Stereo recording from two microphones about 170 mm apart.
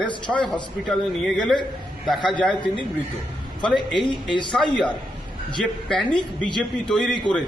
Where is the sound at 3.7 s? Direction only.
Centre (ahead or behind).